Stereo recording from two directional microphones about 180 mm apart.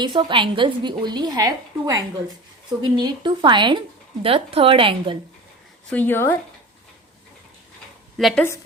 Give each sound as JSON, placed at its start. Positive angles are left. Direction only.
{"t": 0.0, "sound": "speech", "side_deg": -25}
{"t": 5.9, "sound": "speech", "side_deg": 10}
{"t": 8.2, "sound": "a woman's voice", "side_deg": 0}